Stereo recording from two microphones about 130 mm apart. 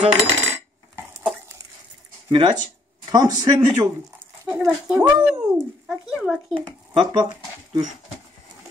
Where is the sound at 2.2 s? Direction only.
40° right (ahead or behind).